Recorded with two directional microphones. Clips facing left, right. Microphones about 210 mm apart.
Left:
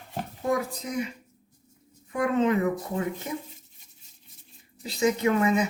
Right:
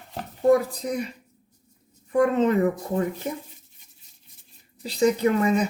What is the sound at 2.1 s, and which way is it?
Speech, 35° right (ahead or behind).